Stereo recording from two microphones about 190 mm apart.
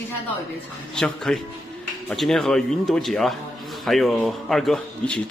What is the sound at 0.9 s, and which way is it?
A man's voice, 5° left (ahead or behind).